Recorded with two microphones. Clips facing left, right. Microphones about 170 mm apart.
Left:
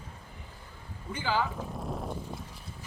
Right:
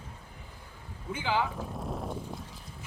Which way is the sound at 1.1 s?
15° right (ahead or behind).